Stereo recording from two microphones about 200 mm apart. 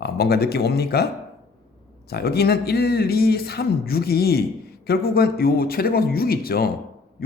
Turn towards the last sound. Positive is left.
turn(degrees=50)  # may be behind; listen again after turning